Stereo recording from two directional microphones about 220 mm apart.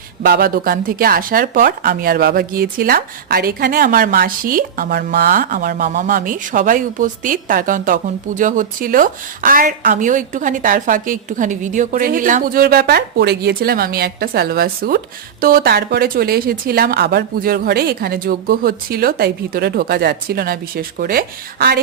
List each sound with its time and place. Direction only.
0.2 s speech: 45° right (ahead or behind)